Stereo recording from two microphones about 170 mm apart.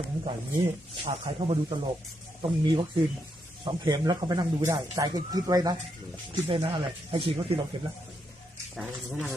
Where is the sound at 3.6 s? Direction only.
25° right (ahead or behind).